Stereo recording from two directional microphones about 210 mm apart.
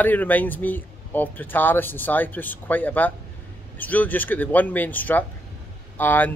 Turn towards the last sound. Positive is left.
turn(degrees=10)  # may be behind; listen again after turning